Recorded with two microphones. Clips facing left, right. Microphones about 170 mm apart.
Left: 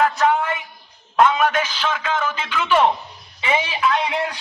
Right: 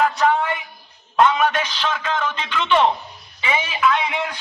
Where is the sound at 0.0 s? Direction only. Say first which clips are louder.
Even; centre (ahead or behind).